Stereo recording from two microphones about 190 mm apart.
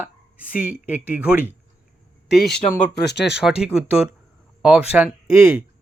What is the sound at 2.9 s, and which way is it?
Speech, 60° left (ahead or behind).